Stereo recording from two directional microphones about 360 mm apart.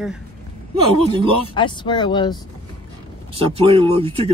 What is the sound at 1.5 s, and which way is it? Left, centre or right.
Speech, centre.